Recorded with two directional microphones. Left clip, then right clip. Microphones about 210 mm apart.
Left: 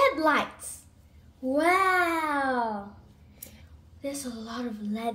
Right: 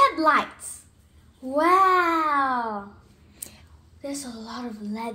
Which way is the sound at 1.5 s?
15° right (ahead or behind).